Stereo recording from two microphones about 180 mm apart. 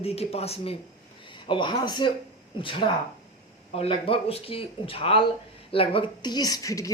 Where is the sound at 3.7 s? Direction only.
30° left (ahead or behind).